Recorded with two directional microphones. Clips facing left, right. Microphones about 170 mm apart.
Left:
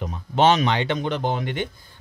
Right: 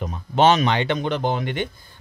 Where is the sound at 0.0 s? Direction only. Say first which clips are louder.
Right 1 dB; 45° right (ahead or behind); by 1.7 s 70° right (ahead or behind).